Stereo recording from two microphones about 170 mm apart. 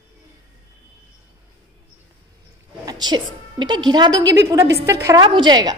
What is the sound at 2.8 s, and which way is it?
A woman's voice, 25° right (ahead or behind).